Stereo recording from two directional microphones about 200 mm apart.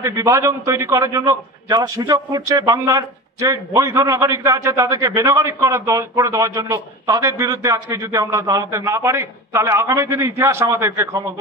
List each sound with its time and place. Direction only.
0.0 s a man's voice: 15° right (ahead or behind)